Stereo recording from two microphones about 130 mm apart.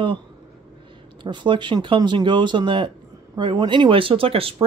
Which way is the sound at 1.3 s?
40° right (ahead or behind).